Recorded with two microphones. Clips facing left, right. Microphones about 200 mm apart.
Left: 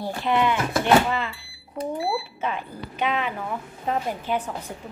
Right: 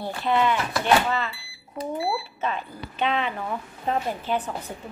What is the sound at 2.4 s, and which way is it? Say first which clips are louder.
A woman's voice: even; 10° left (ahead or behind).